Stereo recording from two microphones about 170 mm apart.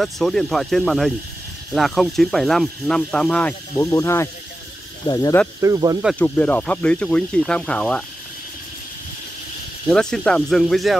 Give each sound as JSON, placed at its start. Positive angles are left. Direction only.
{"t": 0.0, "sound": "speech", "side_deg": 0}
{"t": 5.6, "sound": "speech", "side_deg": -20}
{"t": 6.1, "sound": "speech", "side_deg": 10}
{"t": 9.8, "sound": "speech", "side_deg": 5}